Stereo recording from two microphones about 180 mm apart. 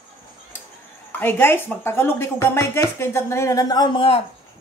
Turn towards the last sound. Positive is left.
turn(degrees=30)  # may be behind; listen again after turning